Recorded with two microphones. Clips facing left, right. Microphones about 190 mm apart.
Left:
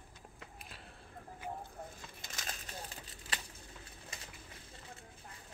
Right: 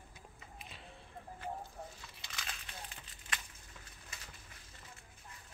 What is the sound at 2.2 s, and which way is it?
Crumpling, 40° left (ahead or behind).